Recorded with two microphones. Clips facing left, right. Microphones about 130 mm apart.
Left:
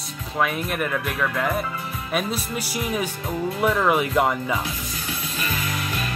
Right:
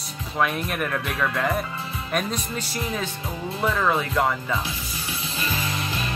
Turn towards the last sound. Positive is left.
turn(degrees=-25)  # may be behind; listen again after turning